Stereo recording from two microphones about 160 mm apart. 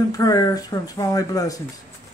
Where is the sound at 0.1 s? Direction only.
20° left (ahead or behind).